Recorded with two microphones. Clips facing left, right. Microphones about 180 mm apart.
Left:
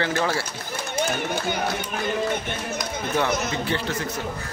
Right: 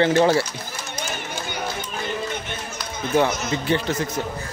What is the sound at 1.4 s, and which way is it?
Run, 65° left (ahead or behind).